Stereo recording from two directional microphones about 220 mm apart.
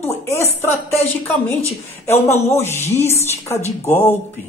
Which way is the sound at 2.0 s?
10° left (ahead or behind).